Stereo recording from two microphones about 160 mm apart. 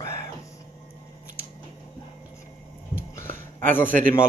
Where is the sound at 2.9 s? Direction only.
15° left (ahead or behind).